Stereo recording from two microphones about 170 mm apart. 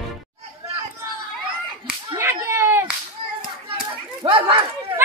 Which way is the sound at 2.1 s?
15° right (ahead or behind).